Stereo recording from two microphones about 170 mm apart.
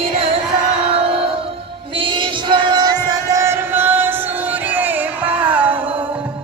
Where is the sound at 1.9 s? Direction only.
30° right (ahead or behind); by 5.7 s 10° right (ahead or behind).